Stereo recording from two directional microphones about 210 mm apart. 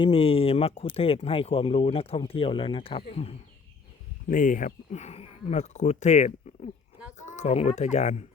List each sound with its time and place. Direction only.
0.0 s speech: 25° left (ahead or behind)